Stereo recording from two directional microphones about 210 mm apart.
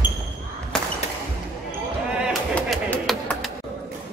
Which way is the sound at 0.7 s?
5° left (ahead or behind).